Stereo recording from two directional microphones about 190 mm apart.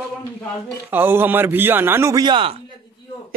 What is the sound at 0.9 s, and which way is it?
A man's voice, 10° right (ahead or behind).